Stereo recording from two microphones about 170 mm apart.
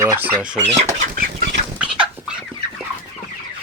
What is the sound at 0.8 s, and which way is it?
Speech, 45° right (ahead or behind).